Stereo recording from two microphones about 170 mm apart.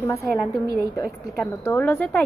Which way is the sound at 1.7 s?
10° left (ahead or behind).